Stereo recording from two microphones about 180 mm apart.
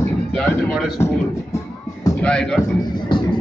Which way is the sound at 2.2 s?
5° left (ahead or behind).